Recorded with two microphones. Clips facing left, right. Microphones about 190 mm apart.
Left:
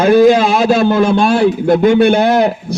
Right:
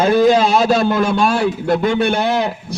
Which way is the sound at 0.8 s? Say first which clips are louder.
Left 4 dB; 30° left (ahead or behind).